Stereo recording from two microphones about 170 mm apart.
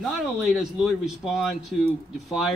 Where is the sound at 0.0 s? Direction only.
Centre (ahead or behind).